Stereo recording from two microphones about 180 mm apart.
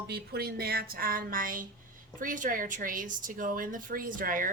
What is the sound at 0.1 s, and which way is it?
A woman's voice, 60° right (ahead or behind).